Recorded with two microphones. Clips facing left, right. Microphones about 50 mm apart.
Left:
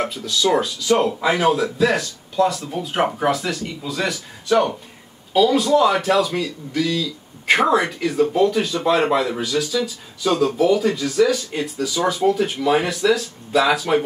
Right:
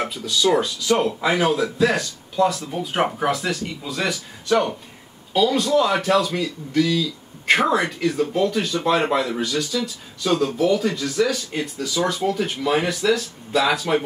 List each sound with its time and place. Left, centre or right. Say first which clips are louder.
0.0 s speech: even; centre